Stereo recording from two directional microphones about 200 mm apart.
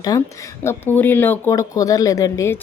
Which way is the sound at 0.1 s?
20° left (ahead or behind).